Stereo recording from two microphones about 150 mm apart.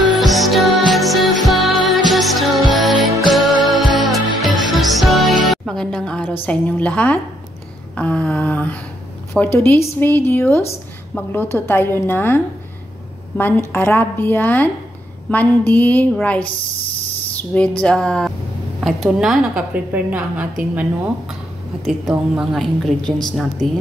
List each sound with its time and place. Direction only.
0.2 s music: centre (ahead or behind)
6.4 s speech: 10° left (ahead or behind)
13.4 s a woman's voice: 15° left (ahead or behind); by 20.8 s 10° right (ahead or behind)
22.3 s a woman's voice: 5° right (ahead or behind)